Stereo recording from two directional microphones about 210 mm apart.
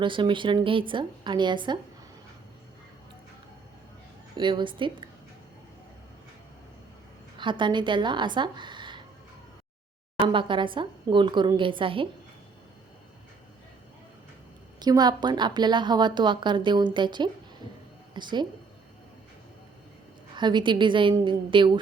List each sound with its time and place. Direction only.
0.0 s a woman's voice: 25° right (ahead or behind)
4.4 s a woman's voice: 20° right (ahead or behind)
7.3 s a woman's voice: 20° right (ahead or behind)
10.3 s a woman's voice: 25° right (ahead or behind)
14.8 s a woman's voice: 20° right (ahead or behind)
20.3 s a woman's voice: 20° right (ahead or behind)